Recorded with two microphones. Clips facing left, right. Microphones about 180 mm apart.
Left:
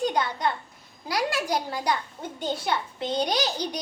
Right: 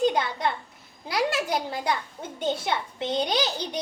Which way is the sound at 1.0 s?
25° right (ahead or behind).